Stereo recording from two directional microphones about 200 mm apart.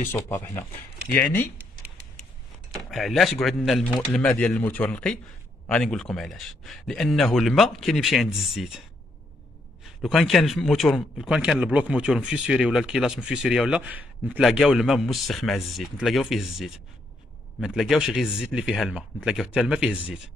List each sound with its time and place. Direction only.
0.1 s speech: 10° left (ahead or behind)
2.7 s a man's voice: centre (ahead or behind)
9.8 s a man's voice: centre (ahead or behind)